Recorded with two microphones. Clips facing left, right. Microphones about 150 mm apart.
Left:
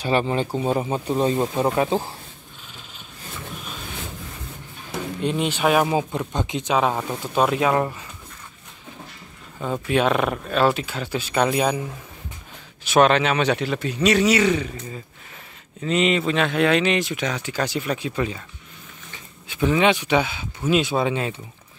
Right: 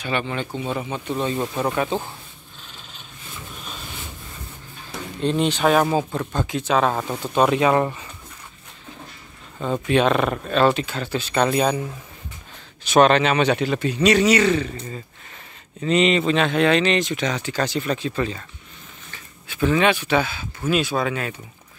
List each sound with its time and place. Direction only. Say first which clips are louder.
0.0 s speech: left 4 dB; 35° left (ahead or behind)
1.4 s speech: left 2 dB; 20° left (ahead or behind)
5.2 s speech: right 3 dB; 10° left (ahead or behind)
7.0 s a man's voice: right 2 dB; centre (ahead or behind)
9.6 s a man's voice: right 2 dB; 5° left (ahead or behind)
15.8 s speech: right 2 dB; 5° left (ahead or behind)
19.1 s a sound: even; 20° left (ahead or behind)
19.8 s speech: left 2 dB; 20° left (ahead or behind)